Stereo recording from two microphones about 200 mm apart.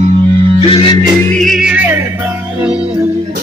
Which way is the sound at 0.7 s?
25° left (ahead or behind).